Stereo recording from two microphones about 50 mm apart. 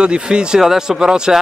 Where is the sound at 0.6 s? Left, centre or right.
Centre.